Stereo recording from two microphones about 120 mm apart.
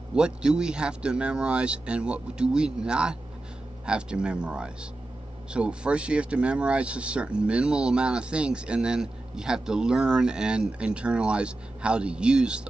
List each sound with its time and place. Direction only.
0.1 s speech: 5° right (ahead or behind)